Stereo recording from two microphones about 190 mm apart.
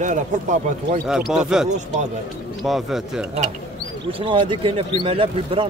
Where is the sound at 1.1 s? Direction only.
Centre (ahead or behind).